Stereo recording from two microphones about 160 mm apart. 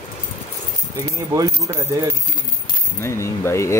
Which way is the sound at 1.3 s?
20° right (ahead or behind).